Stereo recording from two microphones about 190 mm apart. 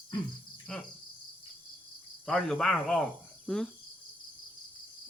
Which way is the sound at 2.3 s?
5° left (ahead or behind).